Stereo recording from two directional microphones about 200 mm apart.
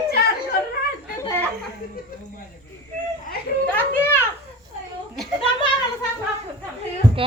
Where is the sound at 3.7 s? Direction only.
10° left (ahead or behind).